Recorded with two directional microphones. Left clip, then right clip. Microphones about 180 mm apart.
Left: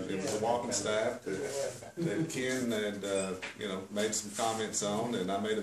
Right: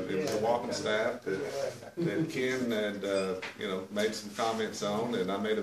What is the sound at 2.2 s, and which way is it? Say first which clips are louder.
Speech: right 2 dB; 25° left (ahead or behind).